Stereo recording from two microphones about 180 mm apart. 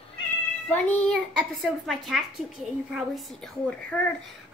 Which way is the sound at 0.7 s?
5° left (ahead or behind).